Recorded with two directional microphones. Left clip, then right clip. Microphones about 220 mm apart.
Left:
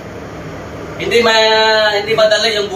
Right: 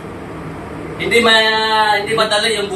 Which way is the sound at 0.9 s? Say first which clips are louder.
Even; centre (ahead or behind).